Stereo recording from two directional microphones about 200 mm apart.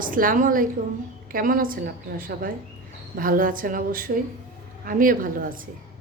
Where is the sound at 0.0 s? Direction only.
45° right (ahead or behind).